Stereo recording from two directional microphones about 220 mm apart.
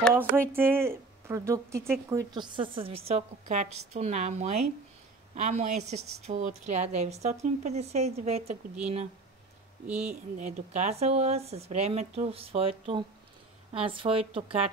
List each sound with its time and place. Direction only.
0.1 s a woman's voice: 10° right (ahead or behind); by 8.5 s 30° right (ahead or behind)
9.8 s speech: 5° right (ahead or behind)
10.3 s a woman's voice: 30° right (ahead or behind)